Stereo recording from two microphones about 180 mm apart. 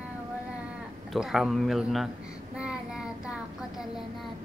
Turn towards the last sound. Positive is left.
turn(degrees=-5)  # may be behind; listen again after turning